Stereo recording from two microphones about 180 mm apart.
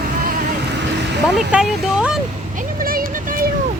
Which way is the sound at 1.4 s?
5° right (ahead or behind).